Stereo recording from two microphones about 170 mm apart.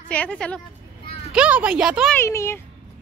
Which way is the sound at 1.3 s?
5° right (ahead or behind).